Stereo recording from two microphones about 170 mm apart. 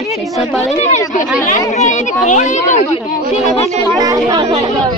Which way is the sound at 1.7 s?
45° left (ahead or behind).